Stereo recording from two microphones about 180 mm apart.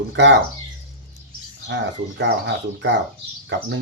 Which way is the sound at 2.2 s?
90° right.